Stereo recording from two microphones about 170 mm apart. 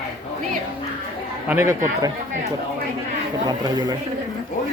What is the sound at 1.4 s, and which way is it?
Speech, 15° right (ahead or behind).